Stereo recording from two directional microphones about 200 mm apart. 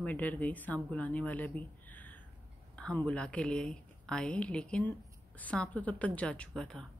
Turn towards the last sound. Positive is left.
turn(degrees=5)  # may be behind; listen again after turning